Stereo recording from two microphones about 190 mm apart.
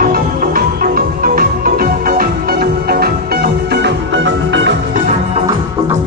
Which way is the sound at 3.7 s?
65° right (ahead or behind).